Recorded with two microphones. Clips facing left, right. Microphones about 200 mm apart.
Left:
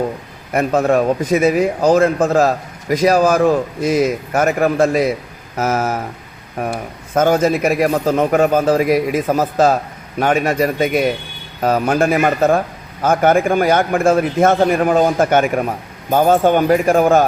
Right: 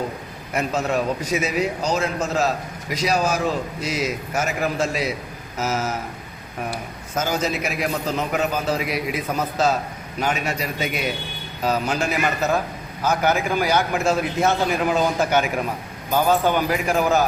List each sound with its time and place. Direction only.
0.5 s a man's voice: 55° left (ahead or behind)